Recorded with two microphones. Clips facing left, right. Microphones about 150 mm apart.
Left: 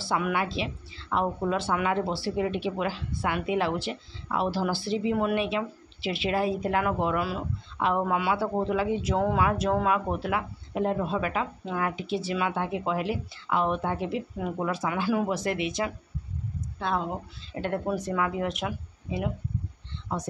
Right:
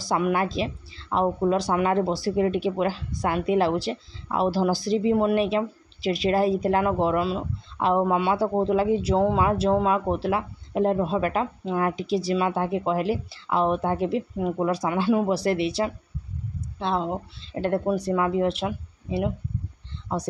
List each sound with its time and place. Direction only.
0.0 s speech: 40° right (ahead or behind)
17.6 s speech: 35° right (ahead or behind)